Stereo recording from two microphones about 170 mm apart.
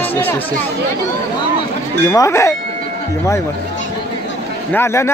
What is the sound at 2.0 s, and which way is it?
Speech, 20° left (ahead or behind).